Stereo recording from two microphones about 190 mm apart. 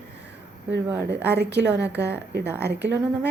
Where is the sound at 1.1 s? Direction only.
60° right (ahead or behind).